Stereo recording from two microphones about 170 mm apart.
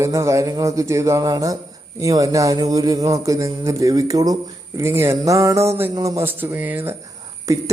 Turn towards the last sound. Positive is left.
turn(degrees=-20)  # may be behind; listen again after turning